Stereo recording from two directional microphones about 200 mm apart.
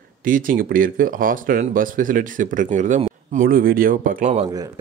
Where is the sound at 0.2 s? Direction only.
45° right (ahead or behind).